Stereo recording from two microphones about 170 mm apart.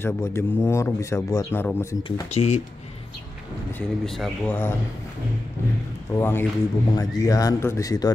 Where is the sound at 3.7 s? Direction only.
Centre (ahead or behind).